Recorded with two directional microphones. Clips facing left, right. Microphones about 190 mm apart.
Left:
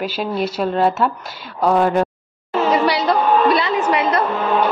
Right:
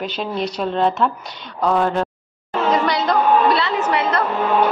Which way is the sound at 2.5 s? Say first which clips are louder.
Left 2 dB; 10° left (ahead or behind).